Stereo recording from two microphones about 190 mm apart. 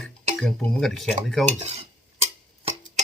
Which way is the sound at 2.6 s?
30° right (ahead or behind).